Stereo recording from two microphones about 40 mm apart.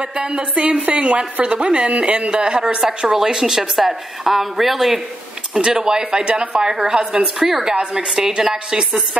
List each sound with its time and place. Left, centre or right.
0.2 s a woman's voice: right
3.3 s a woman's voice: centre
5.5 s speech: centre
6.6 s a woman's voice: centre
7.3 s a woman's voice: centre
7.7 s speech: right